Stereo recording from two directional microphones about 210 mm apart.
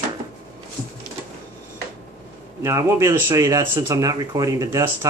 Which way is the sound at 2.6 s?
15° right (ahead or behind).